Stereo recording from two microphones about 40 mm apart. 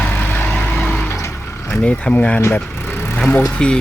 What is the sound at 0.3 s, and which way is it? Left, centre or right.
Vehicle, left.